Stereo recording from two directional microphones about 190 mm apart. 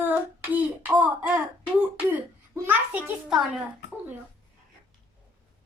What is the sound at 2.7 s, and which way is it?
Speech, 5° right (ahead or behind).